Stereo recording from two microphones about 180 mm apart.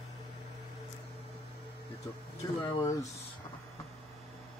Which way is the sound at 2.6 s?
30° left (ahead or behind).